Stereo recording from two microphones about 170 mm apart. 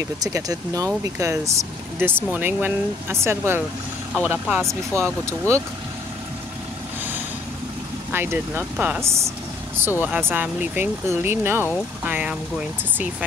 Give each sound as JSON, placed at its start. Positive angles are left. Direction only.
{"t": 0.0, "sound": "speech", "side_deg": -20}
{"t": 8.1, "sound": "speech", "side_deg": -15}